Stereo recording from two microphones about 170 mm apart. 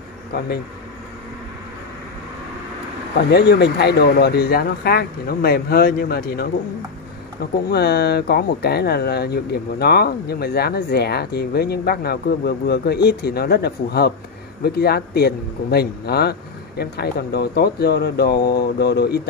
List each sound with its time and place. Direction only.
3.2 s speech: 70° left (ahead or behind)
7.7 s speech: 70° left (ahead or behind)